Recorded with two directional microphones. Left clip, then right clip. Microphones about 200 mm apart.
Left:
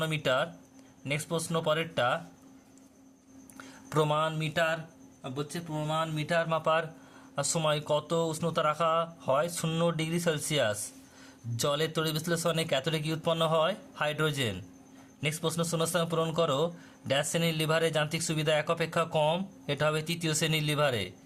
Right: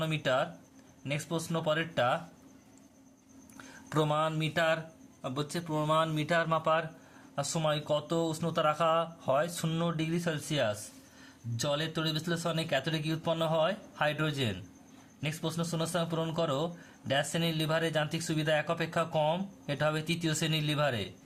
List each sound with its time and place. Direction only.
0.0 s speech: 15° left (ahead or behind)
3.6 s speech: 10° left (ahead or behind)
5.2 s a man's voice: 15° right (ahead or behind)
6.6 s speech: 15° left (ahead or behind)